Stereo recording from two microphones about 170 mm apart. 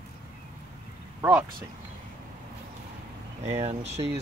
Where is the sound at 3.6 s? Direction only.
35° right (ahead or behind).